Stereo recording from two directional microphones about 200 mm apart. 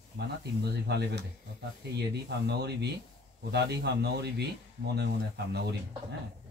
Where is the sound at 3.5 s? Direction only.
55° right (ahead or behind).